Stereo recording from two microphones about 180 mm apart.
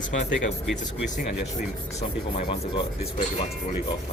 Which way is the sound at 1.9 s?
30° left (ahead or behind).